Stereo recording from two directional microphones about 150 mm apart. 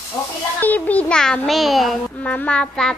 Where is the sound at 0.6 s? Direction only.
10° left (ahead or behind).